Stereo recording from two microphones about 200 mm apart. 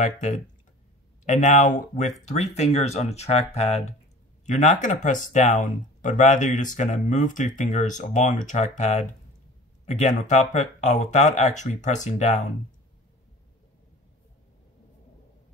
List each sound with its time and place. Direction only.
0.0 s speech: 40° left (ahead or behind)